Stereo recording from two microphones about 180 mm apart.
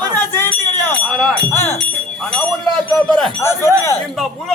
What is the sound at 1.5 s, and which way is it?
Speech, 15° left (ahead or behind).